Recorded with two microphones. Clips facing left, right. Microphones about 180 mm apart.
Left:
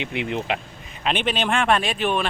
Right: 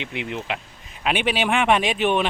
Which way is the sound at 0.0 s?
20° left (ahead or behind).